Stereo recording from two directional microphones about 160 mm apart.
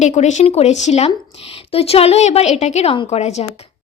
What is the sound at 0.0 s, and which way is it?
Speech, 45° left (ahead or behind).